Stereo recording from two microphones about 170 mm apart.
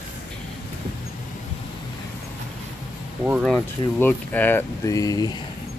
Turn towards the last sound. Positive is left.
turn(degrees=20)  # may be behind; listen again after turning